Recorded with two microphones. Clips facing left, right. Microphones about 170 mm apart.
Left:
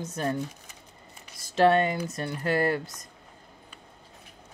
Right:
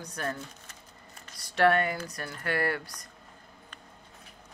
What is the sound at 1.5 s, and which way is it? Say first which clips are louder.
Speech: left 3 dB; 20° left (ahead or behind).